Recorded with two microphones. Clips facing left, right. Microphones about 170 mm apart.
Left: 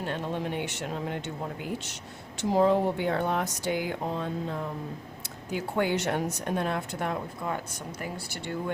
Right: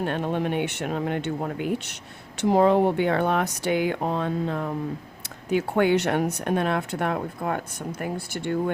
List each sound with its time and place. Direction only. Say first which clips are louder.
0.0 s speech: right 6 dB; 60° right (ahead or behind)